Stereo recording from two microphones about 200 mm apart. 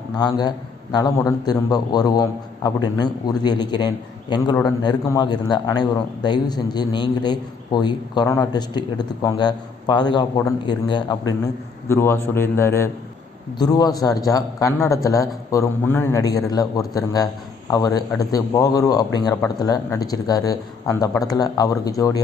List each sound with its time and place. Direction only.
0.2 s a man's voice: 20° left (ahead or behind)